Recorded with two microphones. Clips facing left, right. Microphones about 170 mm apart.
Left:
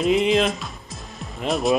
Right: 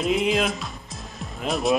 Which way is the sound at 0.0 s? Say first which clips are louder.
Left 4 dB; centre (ahead or behind).